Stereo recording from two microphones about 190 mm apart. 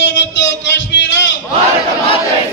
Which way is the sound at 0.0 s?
70° left (ahead or behind).